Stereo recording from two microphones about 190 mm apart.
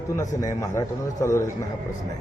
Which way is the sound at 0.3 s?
15° left (ahead or behind).